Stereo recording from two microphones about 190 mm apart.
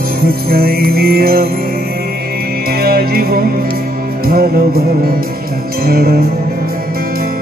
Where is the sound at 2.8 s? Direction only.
50° right (ahead or behind).